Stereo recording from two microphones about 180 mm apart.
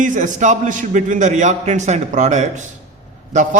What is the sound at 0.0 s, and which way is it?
A man's voice, 45° right (ahead or behind).